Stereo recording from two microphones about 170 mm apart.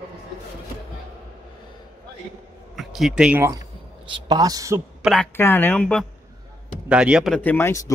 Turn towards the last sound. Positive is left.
turn(degrees=15)  # may be behind; listen again after turning